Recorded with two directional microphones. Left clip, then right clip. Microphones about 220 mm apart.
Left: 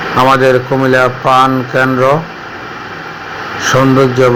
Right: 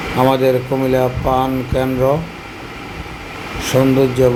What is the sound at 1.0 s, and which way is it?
Speech, 15° left (ahead or behind).